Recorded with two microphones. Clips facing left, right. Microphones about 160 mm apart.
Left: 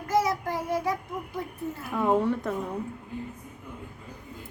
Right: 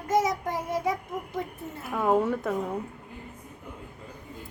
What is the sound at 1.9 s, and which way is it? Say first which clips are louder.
Speech: even; centre (ahead or behind).